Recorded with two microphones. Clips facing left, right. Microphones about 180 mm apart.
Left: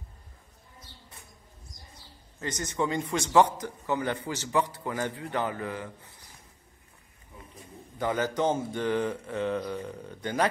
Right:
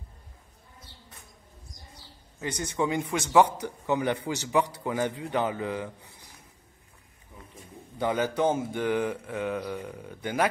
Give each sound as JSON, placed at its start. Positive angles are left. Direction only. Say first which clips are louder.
{"t": 2.4, "sound": "a man's voice", "louder": "right 1 dB", "side_deg": -10}
{"t": 8.0, "sound": "a man's voice", "louder": "right 2 dB", "side_deg": -15}